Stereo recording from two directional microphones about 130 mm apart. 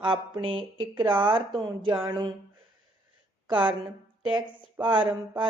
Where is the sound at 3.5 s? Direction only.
10° right (ahead or behind).